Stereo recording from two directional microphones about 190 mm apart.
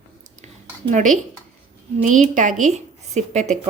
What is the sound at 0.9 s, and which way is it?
Speech, 40° right (ahead or behind).